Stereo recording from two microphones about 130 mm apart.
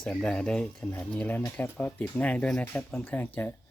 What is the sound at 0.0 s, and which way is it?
Speech, 5° left (ahead or behind).